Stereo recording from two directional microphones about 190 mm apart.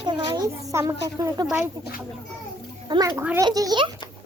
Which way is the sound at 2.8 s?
25° right (ahead or behind).